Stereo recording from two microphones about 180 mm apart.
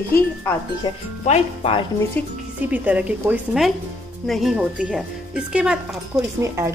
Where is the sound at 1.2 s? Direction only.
35° left (ahead or behind).